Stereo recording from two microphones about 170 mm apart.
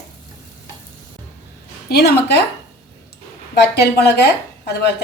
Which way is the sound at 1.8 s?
70° left (ahead or behind).